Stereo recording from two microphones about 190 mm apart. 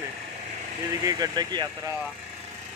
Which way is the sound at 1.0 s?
20° right (ahead or behind).